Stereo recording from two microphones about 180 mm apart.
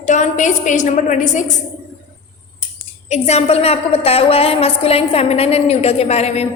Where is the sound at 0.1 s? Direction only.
40° left (ahead or behind).